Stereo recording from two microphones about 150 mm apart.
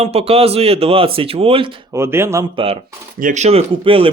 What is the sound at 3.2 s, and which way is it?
Speech, 55° right (ahead or behind).